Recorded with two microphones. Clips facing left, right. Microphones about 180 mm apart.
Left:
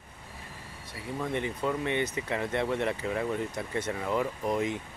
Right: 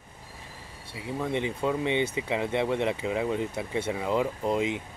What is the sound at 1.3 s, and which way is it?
Speech, 20° right (ahead or behind).